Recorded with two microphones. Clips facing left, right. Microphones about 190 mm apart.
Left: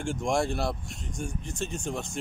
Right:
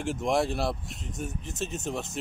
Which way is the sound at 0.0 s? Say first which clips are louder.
Right 1 dB; 5° right (ahead or behind).